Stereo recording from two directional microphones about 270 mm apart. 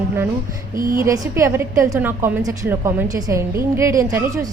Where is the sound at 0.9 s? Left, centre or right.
Centre.